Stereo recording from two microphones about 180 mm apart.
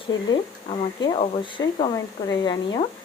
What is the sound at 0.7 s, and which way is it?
A woman's voice, 30° left (ahead or behind).